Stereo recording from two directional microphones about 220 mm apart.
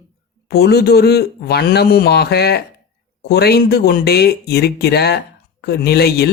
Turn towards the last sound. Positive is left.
turn(degrees=45)  # may be behind; listen again after turning